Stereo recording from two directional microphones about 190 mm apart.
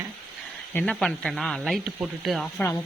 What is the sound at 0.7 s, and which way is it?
Speech, 5° left (ahead or behind).